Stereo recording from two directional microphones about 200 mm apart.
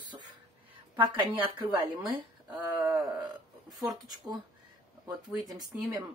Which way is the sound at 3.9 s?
20° right (ahead or behind).